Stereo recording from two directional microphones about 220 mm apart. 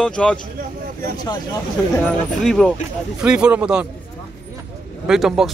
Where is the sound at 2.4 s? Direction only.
Centre (ahead or behind).